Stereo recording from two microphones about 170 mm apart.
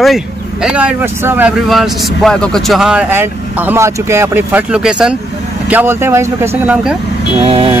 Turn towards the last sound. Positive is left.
turn(degrees=-35)  # may be behind; listen again after turning